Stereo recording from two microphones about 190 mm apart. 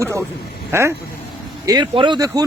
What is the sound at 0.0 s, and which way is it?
Speech, 15° right (ahead or behind).